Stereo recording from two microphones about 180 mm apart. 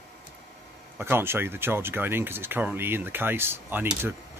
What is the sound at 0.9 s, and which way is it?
Speech, 10° right (ahead or behind).